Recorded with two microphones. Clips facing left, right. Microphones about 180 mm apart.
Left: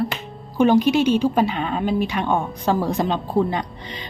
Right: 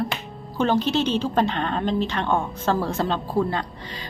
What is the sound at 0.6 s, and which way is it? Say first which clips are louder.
A woman's voice: left 5 dB; 15° left (ahead or behind).